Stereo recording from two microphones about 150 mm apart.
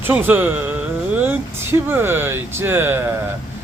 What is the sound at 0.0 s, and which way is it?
Speech, 15° right (ahead or behind).